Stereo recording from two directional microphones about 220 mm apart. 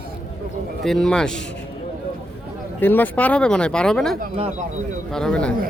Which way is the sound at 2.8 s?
10° left (ahead or behind).